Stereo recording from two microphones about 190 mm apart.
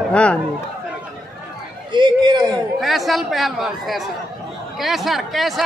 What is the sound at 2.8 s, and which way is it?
A man's voice, centre (ahead or behind).